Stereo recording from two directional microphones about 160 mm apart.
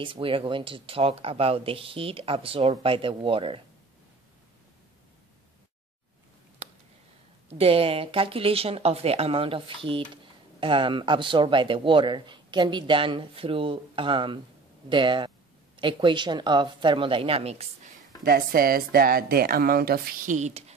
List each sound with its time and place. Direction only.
0.0 s a man's voice: 35° right (ahead or behind)
6.6 s a sound: 40° right (ahead or behind)
7.5 s a man's voice: 35° right (ahead or behind)
18.2 s speech: 65° right (ahead or behind); by 20.7 s 45° right (ahead or behind)